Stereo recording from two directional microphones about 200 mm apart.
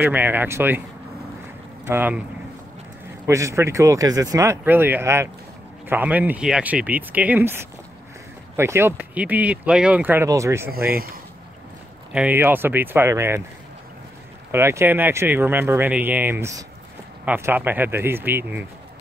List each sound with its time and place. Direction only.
0.0 s speech: 10° right (ahead or behind)
1.9 s speech: 10° right (ahead or behind)
3.3 s speech: 15° right (ahead or behind)
10.7 s speech: 50° right (ahead or behind)
12.1 s speech: 5° right (ahead or behind)
14.5 s speech: 15° right (ahead or behind)